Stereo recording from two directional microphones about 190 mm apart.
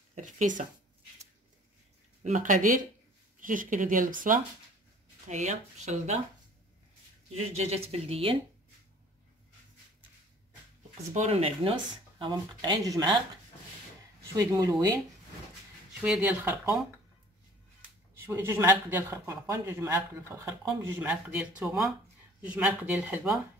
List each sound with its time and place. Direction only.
0.1 s speech: 40° right (ahead or behind)
2.2 s speech: 40° right (ahead or behind)
7.3 s speech: 35° right (ahead or behind)
11.1 s speech: 30° right (ahead or behind)
14.3 s speech: 20° right (ahead or behind)
16.0 s speech: 5° right (ahead or behind)
18.2 s speech: 10° right (ahead or behind)